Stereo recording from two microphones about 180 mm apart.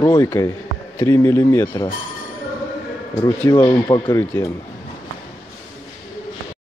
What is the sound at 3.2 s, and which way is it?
Speech, 20° left (ahead or behind).